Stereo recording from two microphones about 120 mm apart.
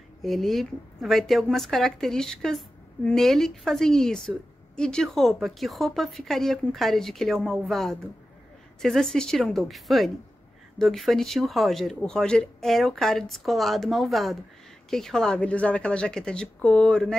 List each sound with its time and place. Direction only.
0.2 s a woman's voice: centre (ahead or behind)